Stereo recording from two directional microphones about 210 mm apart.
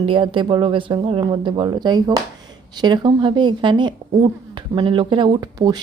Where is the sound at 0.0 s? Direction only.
25° right (ahead or behind).